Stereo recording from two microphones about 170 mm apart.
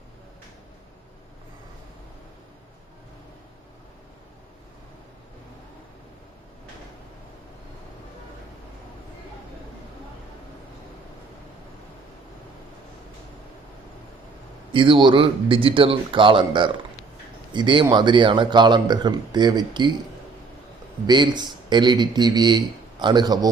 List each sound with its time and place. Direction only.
14.7 s a man's voice: 30° right (ahead or behind)
21.1 s a man's voice: 25° right (ahead or behind)